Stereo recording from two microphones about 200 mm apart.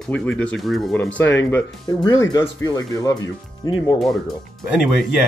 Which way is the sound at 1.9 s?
20° left (ahead or behind).